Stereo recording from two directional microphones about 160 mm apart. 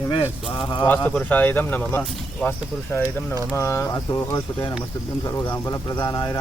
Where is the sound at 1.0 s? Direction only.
10° left (ahead or behind).